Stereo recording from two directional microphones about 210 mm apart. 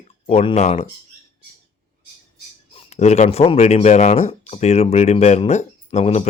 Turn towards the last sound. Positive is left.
turn(degrees=30)  # may be behind; listen again after turning